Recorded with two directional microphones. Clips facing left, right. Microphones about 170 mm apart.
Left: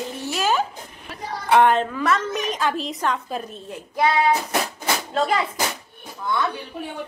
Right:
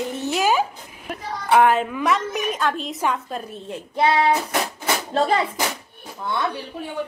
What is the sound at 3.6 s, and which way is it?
Speech, 25° right (ahead or behind).